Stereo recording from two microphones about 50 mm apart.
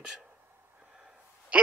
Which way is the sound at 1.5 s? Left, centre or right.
Right.